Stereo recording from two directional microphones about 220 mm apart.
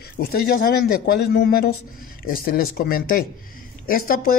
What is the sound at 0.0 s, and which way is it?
Speech, 45° left (ahead or behind).